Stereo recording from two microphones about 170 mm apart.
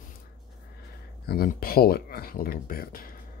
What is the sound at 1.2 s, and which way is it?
Speech, 60° left (ahead or behind).